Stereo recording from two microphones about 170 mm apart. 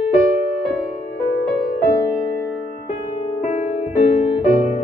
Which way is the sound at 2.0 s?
25° left (ahead or behind).